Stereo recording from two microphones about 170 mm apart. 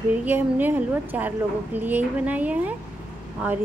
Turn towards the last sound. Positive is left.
turn(degrees=-10)  # may be behind; listen again after turning